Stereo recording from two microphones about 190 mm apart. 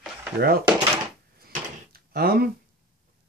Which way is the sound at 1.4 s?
55° right (ahead or behind).